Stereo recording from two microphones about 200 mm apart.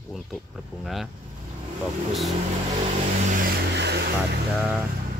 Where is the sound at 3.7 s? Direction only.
55° right (ahead or behind).